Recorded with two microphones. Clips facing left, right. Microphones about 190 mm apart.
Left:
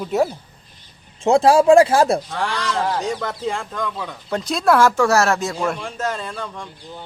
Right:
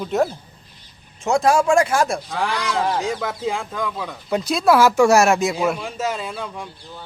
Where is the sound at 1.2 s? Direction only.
30° left (ahead or behind).